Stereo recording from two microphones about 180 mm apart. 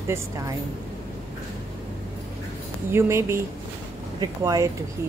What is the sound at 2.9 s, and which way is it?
Speech, 15° right (ahead or behind).